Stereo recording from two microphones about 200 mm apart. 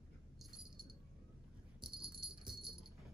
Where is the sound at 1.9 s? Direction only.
25° right (ahead or behind).